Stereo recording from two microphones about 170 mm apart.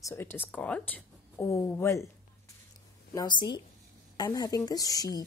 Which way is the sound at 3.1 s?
25° left (ahead or behind).